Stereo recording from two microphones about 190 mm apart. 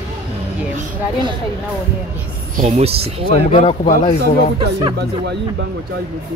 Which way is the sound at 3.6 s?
30° left (ahead or behind).